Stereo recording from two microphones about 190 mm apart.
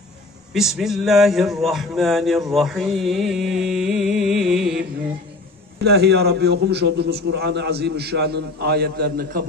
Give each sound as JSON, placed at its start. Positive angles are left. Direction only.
{"t": 0.5, "sound": "speech", "side_deg": 0}
{"t": 5.9, "sound": "a man's voice", "side_deg": -60}